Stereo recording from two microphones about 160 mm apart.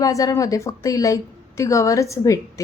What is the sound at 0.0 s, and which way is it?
A woman's voice, 20° left (ahead or behind).